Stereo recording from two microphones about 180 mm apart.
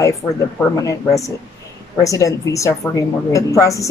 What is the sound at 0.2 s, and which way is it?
Speech, 15° left (ahead or behind).